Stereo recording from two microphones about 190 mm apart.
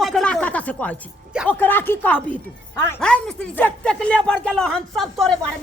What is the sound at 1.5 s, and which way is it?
A man's voice, 10° left (ahead or behind).